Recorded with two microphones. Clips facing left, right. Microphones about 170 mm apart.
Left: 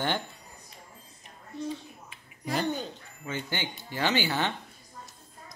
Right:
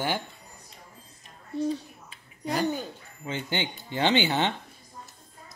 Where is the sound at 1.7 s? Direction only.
35° right (ahead or behind).